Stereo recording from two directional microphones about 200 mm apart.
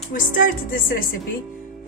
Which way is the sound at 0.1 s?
45° left (ahead or behind).